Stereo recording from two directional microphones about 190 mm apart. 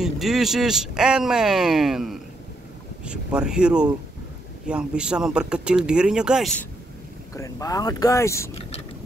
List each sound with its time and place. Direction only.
0.0 s speech: centre (ahead or behind)
7.3 s speech: 15° left (ahead or behind)